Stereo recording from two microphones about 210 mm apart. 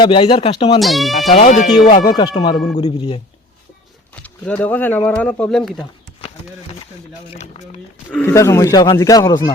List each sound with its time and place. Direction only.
0.0 s speech: 25° left (ahead or behind)
0.8 s speech: centre (ahead or behind)
1.3 s speech: 30° left (ahead or behind)
1.9 s speech: 20° left (ahead or behind)
4.1 s speech: 5° left (ahead or behind)
8.1 s speech: 10° left (ahead or behind)